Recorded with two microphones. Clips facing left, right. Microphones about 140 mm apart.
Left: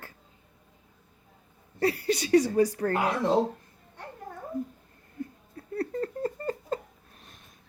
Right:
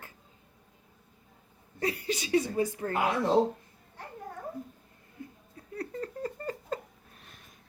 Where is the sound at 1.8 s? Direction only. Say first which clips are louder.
Left 5 dB; 35° left (ahead or behind).